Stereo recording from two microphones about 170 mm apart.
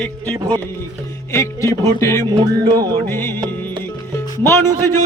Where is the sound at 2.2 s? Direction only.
25° right (ahead or behind).